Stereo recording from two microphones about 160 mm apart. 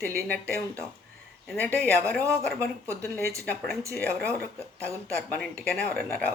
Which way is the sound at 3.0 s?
15° left (ahead or behind).